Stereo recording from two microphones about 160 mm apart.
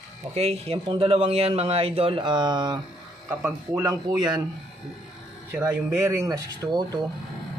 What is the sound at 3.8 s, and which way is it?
Speech, 20° right (ahead or behind).